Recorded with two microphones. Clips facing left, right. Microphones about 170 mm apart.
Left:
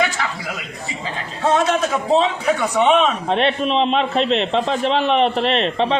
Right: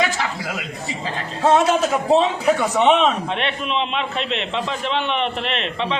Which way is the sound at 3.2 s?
35° left (ahead or behind).